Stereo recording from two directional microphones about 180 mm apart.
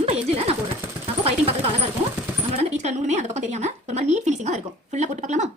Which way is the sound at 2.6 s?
40° right (ahead or behind).